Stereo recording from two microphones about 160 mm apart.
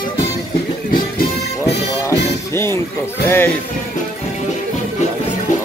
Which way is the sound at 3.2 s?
15° left (ahead or behind).